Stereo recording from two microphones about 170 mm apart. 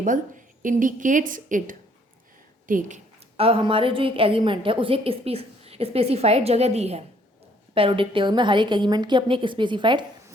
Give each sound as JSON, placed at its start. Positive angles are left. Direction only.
{"t": 0.0, "sound": "a woman's voice", "side_deg": -50}
{"t": 3.3, "sound": "a woman's voice", "side_deg": -35}